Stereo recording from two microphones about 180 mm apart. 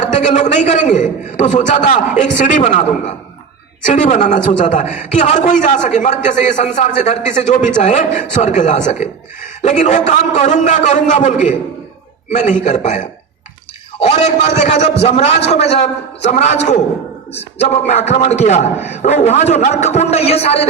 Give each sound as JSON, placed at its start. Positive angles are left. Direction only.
{"t": 0.0, "sound": "a man's voice", "side_deg": 40}
{"t": 3.8, "sound": "a man's voice", "side_deg": 40}